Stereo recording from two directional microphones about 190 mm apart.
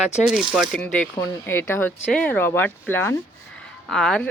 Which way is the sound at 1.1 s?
10° left (ahead or behind).